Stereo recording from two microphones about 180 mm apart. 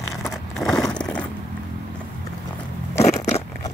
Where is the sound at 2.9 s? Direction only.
40° left (ahead or behind).